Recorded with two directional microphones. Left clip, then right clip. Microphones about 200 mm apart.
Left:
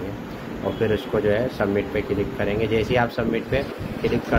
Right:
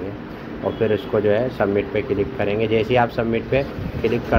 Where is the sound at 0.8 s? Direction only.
Centre (ahead or behind).